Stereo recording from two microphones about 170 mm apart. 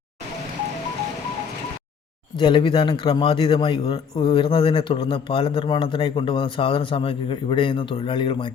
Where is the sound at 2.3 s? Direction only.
30° left (ahead or behind).